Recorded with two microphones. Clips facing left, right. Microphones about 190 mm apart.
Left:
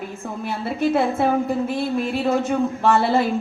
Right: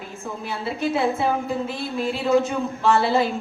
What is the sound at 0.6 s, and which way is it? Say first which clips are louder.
A woman's voice: left 3 dB; 50° left (ahead or behind).